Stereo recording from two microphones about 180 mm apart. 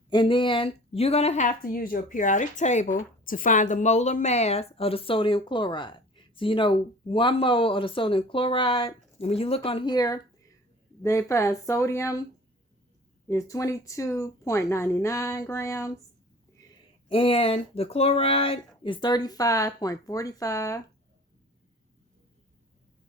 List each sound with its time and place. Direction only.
0.1 s a woman's voice: 25° left (ahead or behind)
13.2 s speech: 15° left (ahead or behind)
17.1 s a woman's voice: 30° left (ahead or behind)